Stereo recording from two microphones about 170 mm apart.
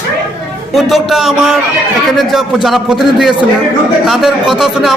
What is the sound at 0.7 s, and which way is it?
A man's voice, centre (ahead or behind).